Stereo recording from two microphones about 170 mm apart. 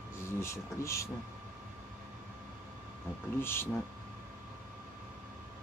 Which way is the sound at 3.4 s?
15° left (ahead or behind).